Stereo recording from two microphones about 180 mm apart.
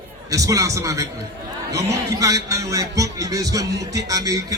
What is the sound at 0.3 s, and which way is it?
A man's voice, 20° right (ahead or behind).